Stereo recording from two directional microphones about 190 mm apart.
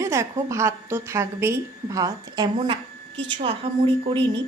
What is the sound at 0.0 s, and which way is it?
A woman's voice, 15° right (ahead or behind).